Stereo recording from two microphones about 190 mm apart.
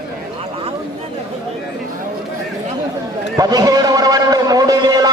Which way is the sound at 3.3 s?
20° right (ahead or behind).